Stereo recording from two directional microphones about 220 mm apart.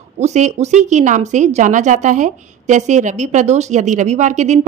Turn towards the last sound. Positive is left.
turn(degrees=-30)  # may be behind; listen again after turning